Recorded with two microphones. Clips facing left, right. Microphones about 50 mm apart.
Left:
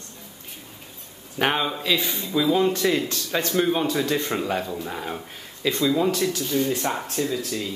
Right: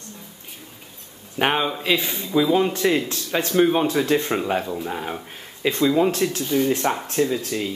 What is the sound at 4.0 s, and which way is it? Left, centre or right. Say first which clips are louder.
Speech: right 4 dB; right.